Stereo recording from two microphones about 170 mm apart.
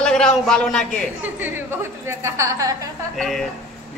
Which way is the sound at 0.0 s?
5° left (ahead or behind).